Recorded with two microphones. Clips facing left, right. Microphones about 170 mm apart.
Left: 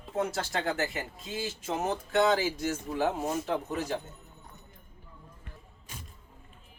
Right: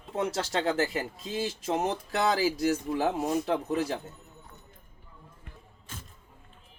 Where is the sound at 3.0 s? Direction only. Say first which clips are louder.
Right 2 dB; 35° right (ahead or behind).